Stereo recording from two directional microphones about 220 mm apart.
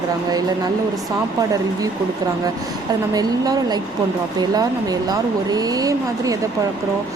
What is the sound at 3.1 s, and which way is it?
Speech, 15° right (ahead or behind).